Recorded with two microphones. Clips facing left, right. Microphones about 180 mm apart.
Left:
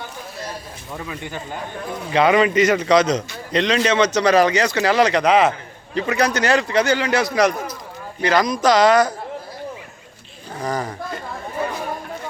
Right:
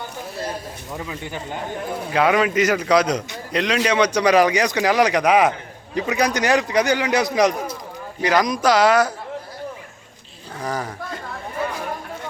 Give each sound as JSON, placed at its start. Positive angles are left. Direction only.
{"t": 0.9, "sound": "speech", "side_deg": -20}
{"t": 2.1, "sound": "a man's voice", "side_deg": -5}
{"t": 10.6, "sound": "speech", "side_deg": -5}